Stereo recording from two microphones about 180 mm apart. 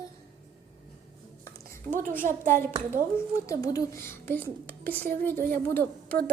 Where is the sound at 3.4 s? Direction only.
20° left (ahead or behind).